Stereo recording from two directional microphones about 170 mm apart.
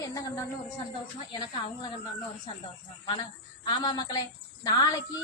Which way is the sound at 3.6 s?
25° left (ahead or behind).